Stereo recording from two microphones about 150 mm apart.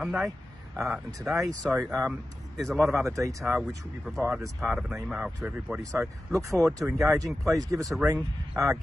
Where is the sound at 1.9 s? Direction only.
15° right (ahead or behind).